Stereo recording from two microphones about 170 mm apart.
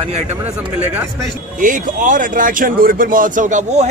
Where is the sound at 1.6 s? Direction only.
50° right (ahead or behind).